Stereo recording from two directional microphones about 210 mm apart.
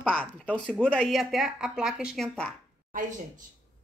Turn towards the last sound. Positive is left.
turn(degrees=-35)  # may be behind; listen again after turning